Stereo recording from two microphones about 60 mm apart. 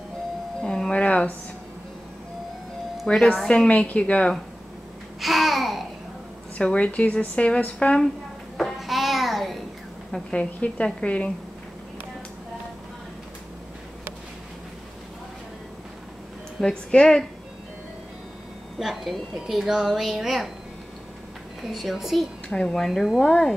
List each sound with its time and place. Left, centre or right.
0.6 s music: centre
1.0 s a sound: left
3.1 s speech: centre
5.2 s babbling: centre
6.6 s speech: centre
8.5 s a sound: centre
10.3 s speech: centre
16.6 s a woman's voice: centre
18.8 s a woman's voice: centre
21.6 s a woman's voice: centre
22.5 s a woman's voice: centre